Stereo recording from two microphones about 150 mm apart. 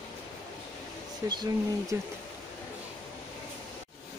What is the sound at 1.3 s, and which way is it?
Speech, 30° right (ahead or behind).